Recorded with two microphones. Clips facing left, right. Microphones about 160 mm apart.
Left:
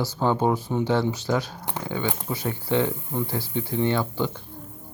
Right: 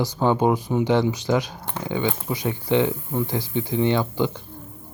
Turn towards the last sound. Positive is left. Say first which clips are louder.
# right 3 dB
turn(degrees=-15)  # may be behind; listen again after turning